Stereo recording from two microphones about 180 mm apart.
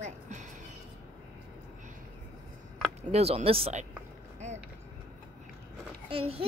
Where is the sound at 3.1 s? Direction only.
35° right (ahead or behind).